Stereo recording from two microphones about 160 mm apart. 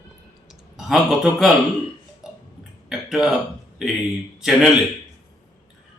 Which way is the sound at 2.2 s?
Centre (ahead or behind).